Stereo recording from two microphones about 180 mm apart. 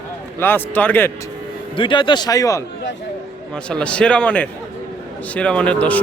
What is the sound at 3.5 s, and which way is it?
A man's voice, 5° left (ahead or behind).